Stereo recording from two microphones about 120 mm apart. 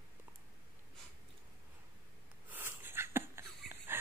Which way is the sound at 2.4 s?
15° right (ahead or behind).